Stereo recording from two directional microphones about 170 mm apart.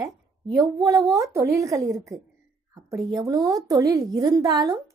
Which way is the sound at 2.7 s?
20° right (ahead or behind).